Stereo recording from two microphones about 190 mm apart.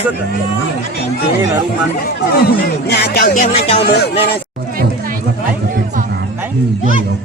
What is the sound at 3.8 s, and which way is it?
Speech, 60° left (ahead or behind).